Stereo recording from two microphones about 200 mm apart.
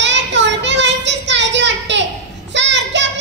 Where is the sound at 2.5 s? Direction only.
65° right (ahead or behind).